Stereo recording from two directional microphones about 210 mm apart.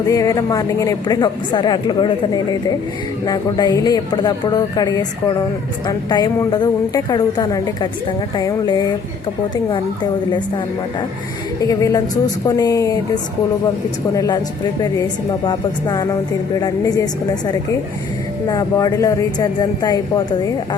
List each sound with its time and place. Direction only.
0.1 s a woman's voice: 15° left (ahead or behind)
11.6 s a woman's voice: 15° left (ahead or behind)
14.1 s a woman's voice: 15° left (ahead or behind)
15.4 s a woman's voice: 15° left (ahead or behind)
18.4 s a woman's voice: 15° left (ahead or behind)